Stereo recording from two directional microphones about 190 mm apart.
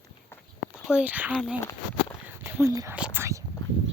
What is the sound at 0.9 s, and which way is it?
Speech, 5° right (ahead or behind).